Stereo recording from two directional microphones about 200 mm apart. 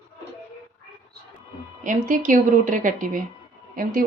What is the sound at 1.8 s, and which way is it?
Speech, 40° right (ahead or behind).